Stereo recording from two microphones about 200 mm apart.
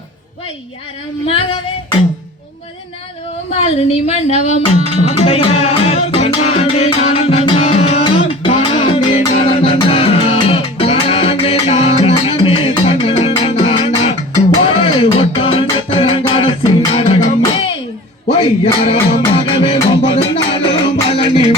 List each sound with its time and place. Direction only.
1.3 s music: 25° left (ahead or behind)
3.8 s music: 30° left (ahead or behind)
19.1 s music: 25° left (ahead or behind)